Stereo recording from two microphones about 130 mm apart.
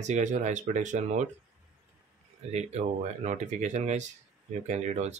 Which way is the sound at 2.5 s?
55° right (ahead or behind).